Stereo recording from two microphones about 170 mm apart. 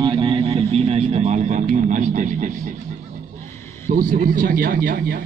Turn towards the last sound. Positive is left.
turn(degrees=-55)  # may be behind; listen again after turning